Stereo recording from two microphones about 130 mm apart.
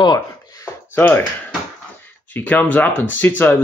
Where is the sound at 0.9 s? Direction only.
15° left (ahead or behind).